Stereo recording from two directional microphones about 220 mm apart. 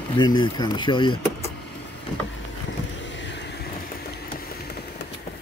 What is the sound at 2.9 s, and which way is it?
Vehicle, 55° left (ahead or behind).